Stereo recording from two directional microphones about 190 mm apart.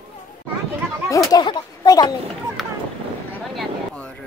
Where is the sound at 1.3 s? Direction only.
20° left (ahead or behind).